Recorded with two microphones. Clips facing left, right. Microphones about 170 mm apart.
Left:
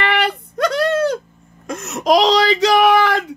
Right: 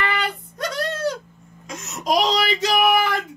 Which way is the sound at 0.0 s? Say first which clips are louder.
Left 6 dB; 70° left (ahead or behind).